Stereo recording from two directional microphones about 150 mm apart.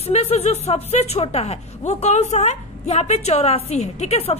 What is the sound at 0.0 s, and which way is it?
A woman's voice, 45° left (ahead or behind).